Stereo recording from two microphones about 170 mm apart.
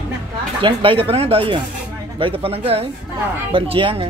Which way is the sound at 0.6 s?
30° right (ahead or behind).